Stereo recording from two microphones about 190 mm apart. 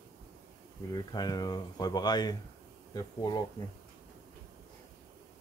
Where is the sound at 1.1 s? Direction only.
20° left (ahead or behind).